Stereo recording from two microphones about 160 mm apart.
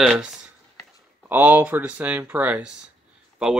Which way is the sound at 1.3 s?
10° right (ahead or behind).